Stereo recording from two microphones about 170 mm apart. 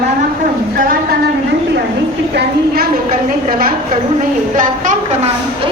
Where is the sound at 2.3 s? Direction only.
60° right (ahead or behind).